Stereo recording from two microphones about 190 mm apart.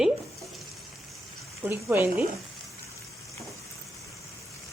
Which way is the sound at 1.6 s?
10° right (ahead or behind).